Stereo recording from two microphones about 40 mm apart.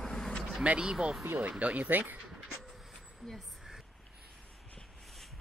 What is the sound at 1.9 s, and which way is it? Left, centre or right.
Speech, right.